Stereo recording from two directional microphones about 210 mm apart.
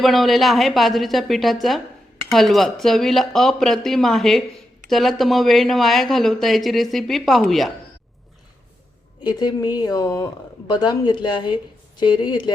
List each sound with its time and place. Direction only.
0.0 s speech: centre (ahead or behind)
9.2 s speech: 20° left (ahead or behind)